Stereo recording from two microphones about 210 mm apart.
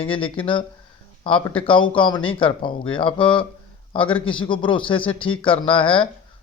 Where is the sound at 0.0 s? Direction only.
25° left (ahead or behind).